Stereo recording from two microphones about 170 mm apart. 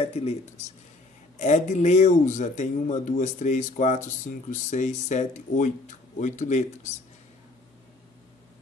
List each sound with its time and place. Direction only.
0.0 s speech: 35° left (ahead or behind)
1.4 s a man's voice: 45° left (ahead or behind)